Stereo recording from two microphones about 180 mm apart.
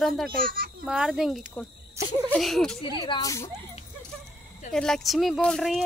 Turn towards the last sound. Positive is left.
turn(degrees=0)  # may be behind; listen again after turning